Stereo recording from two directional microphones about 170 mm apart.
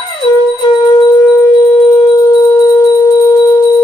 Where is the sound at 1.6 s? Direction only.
25° left (ahead or behind).